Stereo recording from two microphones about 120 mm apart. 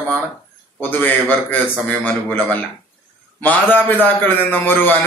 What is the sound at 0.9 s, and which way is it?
A man's voice, 15° left (ahead or behind).